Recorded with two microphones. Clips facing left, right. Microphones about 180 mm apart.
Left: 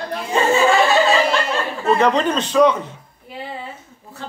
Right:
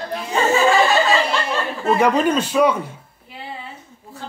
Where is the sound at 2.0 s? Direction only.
10° right (ahead or behind).